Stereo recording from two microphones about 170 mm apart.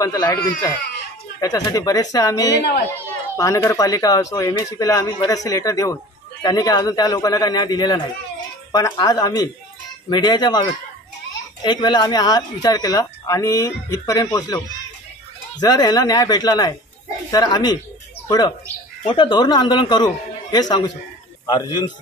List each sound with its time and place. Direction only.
0.0 s speech: 20° left (ahead or behind)
15.6 s speech: 25° left (ahead or behind)
19.0 s speech: 30° left (ahead or behind)